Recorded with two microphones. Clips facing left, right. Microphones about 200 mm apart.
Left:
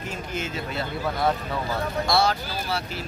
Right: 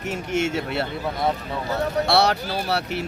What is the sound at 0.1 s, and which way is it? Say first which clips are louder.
Speech: right 9 dB; 75° right (ahead or behind).